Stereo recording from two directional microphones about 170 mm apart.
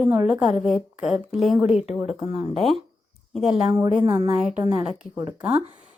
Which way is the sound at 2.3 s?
35° left (ahead or behind).